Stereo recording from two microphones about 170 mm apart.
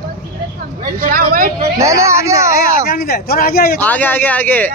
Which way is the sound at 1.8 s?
15° right (ahead or behind).